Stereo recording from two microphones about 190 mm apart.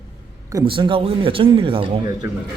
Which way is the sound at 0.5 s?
25° right (ahead or behind).